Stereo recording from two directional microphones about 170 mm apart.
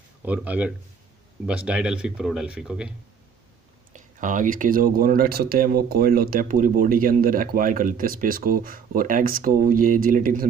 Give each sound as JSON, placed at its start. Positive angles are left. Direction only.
{"t": 0.2, "sound": "speech", "side_deg": -10}
{"t": 3.9, "sound": "speech", "side_deg": -50}